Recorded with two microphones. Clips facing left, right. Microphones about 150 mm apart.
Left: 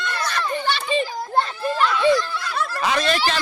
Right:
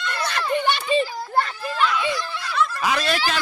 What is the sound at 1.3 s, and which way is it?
Children playing, 25° left (ahead or behind).